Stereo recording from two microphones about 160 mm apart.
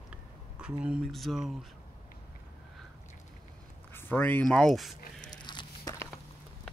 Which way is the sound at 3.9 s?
10° left (ahead or behind).